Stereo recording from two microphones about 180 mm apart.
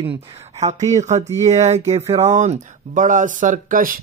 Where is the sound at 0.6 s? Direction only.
40° right (ahead or behind).